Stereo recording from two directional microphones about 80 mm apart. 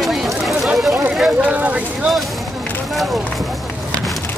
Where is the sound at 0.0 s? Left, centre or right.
Centre.